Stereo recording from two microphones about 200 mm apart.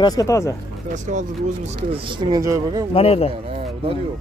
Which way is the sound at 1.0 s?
35° right (ahead or behind).